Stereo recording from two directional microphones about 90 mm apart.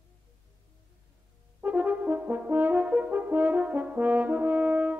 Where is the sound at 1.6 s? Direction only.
20° right (ahead or behind).